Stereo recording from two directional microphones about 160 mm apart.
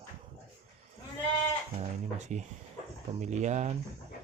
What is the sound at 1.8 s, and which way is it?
Speech, 45° right (ahead or behind).